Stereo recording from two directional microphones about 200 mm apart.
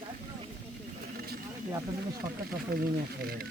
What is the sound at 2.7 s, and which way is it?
Speech, 50° right (ahead or behind).